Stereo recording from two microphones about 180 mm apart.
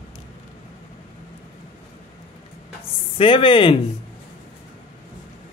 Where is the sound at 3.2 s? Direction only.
30° left (ahead or behind).